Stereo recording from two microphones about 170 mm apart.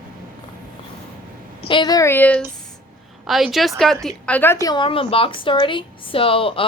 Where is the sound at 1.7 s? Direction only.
25° left (ahead or behind).